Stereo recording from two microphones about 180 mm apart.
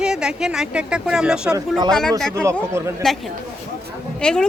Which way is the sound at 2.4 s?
15° right (ahead or behind).